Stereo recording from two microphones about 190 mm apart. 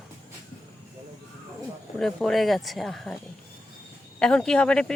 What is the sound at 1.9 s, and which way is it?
Speech, centre (ahead or behind).